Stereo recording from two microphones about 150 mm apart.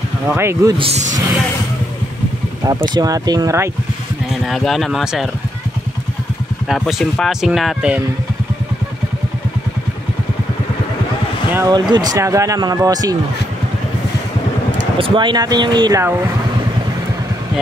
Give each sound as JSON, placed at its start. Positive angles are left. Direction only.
{"t": 0.3, "sound": "speech", "side_deg": -15}
{"t": 0.7, "sound": "speech", "side_deg": -45}
{"t": 2.9, "sound": "speech", "side_deg": -25}
{"t": 4.3, "sound": "speech", "side_deg": 0}
{"t": 6.7, "sound": "speech", "side_deg": 0}
{"t": 11.5, "sound": "speech", "side_deg": -25}
{"t": 15.0, "sound": "speech", "side_deg": -35}